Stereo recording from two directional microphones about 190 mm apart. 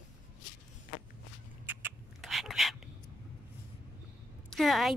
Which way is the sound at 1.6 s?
10° right (ahead or behind).